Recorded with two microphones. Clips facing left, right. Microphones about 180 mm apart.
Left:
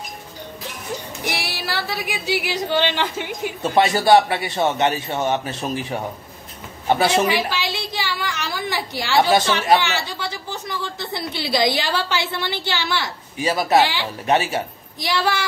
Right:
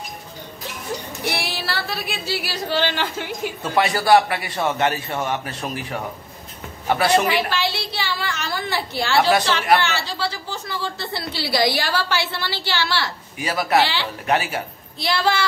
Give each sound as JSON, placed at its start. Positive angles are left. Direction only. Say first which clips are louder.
{"t": 1.2, "sound": "a man's voice", "louder": "right 2 dB", "side_deg": 15}